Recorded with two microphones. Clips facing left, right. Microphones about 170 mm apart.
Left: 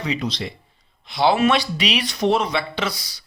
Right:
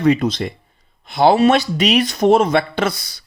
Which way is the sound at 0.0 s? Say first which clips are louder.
Right 10 dB; 50° right (ahead or behind).